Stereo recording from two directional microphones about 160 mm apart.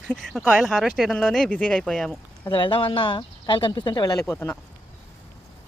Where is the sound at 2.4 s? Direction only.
30° left (ahead or behind); by 4.6 s 15° left (ahead or behind).